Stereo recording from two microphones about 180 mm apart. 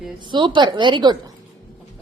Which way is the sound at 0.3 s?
25° right (ahead or behind).